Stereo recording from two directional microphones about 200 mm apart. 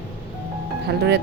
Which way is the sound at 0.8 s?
55° right (ahead or behind).